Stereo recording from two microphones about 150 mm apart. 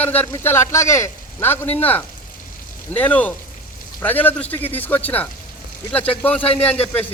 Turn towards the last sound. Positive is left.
turn(degrees=10)  # may be behind; listen again after turning